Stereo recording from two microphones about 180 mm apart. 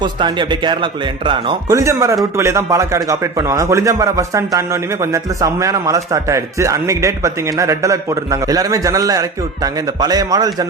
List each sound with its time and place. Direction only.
0.0 s speech: 25° right (ahead or behind)
1.8 s a man's voice: 15° right (ahead or behind)